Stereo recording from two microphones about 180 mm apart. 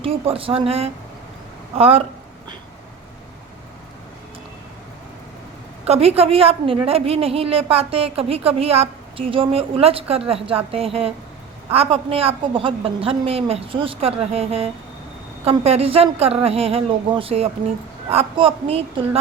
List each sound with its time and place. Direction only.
0.0 s a woman's voice: 30° right (ahead or behind)
5.8 s a woman's voice: 35° right (ahead or behind)